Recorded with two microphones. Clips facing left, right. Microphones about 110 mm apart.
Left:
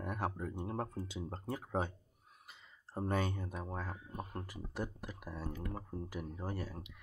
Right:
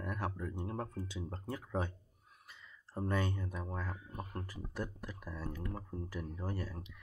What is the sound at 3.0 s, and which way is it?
Speech, 20° left (ahead or behind).